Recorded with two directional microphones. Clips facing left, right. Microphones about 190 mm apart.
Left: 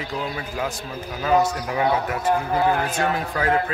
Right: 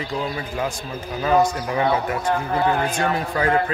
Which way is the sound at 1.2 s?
5° left (ahead or behind).